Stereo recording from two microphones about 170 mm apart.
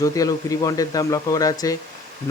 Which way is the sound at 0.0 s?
20° left (ahead or behind).